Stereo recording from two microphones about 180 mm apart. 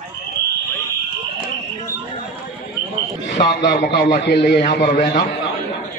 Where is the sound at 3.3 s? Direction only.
80° left.